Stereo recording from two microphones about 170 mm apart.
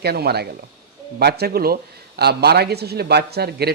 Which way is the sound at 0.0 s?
70° right (ahead or behind).